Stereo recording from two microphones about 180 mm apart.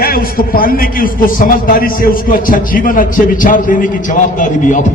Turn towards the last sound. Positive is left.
turn(degrees=45)  # may be behind; listen again after turning